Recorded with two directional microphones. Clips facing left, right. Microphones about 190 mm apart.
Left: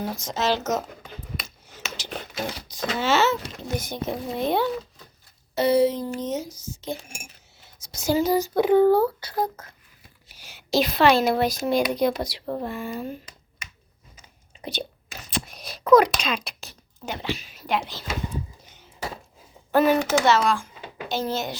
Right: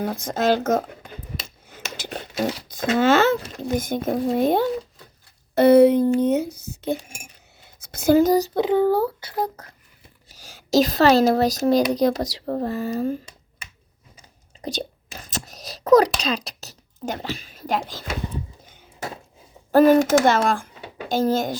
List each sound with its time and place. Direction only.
0.0 s speech: 55° right (ahead or behind)
5.5 s speech: 55° right (ahead or behind); by 8.5 s 40° right (ahead or behind)
8.5 s a sound: 20° right (ahead or behind)
10.4 s speech: 40° right (ahead or behind)
14.6 s whispering: 40° right (ahead or behind)
19.7 s speech: 45° right (ahead or behind)